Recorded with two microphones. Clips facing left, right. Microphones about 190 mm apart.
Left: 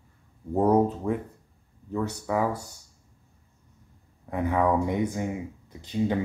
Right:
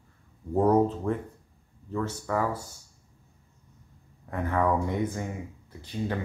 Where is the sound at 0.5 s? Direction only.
10° left (ahead or behind).